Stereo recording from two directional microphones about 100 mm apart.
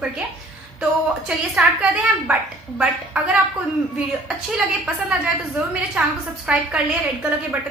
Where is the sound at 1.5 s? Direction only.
10° right (ahead or behind).